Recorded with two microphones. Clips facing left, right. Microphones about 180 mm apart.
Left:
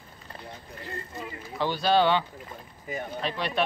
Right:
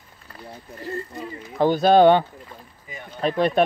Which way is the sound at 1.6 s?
45° right (ahead or behind).